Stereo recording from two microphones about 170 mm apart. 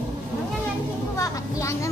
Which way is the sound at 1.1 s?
15° left (ahead or behind).